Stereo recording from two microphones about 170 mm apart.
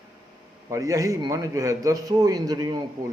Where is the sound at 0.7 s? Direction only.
20° right (ahead or behind).